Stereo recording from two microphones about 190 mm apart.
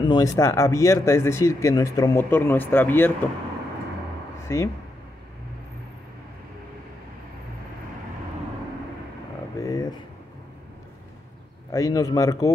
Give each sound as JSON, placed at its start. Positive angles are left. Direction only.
{"t": 0.0, "sound": "speech", "side_deg": 20}
{"t": 4.5, "sound": "speech", "side_deg": 15}
{"t": 9.6, "sound": "a sound", "side_deg": 20}
{"t": 11.7, "sound": "speech", "side_deg": 15}